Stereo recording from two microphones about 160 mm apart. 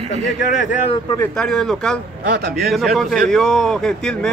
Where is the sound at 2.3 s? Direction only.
75° right (ahead or behind).